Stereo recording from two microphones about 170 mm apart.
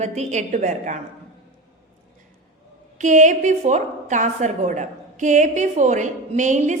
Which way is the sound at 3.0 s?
45° right (ahead or behind).